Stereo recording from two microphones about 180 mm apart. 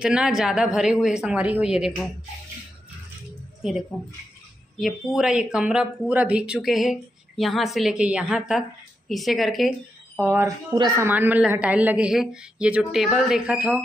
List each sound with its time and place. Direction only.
0.0 s speech: 5° right (ahead or behind)
4.7 s speech: centre (ahead or behind)
10.7 s speech: 25° right (ahead or behind)
11.1 s a woman's voice: 10° right (ahead or behind)